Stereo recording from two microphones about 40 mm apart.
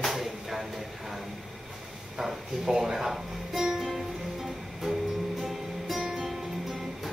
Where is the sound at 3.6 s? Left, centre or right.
Centre.